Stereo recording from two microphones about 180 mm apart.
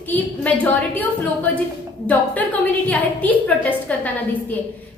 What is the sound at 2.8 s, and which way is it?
A woman's voice, 10° left (ahead or behind).